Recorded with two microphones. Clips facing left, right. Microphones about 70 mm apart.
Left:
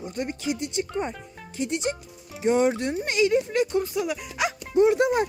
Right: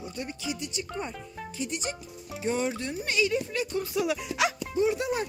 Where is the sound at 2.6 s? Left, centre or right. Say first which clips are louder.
Left 8 dB; left.